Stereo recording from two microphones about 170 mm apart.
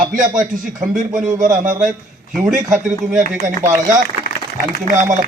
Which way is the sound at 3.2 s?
45° right (ahead or behind).